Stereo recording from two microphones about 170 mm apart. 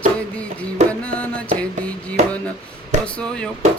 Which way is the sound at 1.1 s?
5° left (ahead or behind).